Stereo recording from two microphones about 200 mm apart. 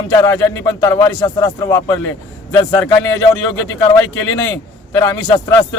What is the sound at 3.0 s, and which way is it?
Speech, 75° left (ahead or behind).